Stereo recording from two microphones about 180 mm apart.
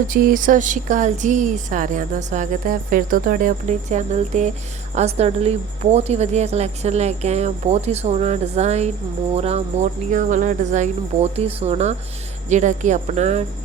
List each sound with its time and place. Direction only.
0.1 s a woman's voice: 50° right (ahead or behind)